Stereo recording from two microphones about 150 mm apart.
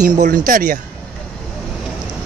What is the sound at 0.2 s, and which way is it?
Speech, 65° right (ahead or behind).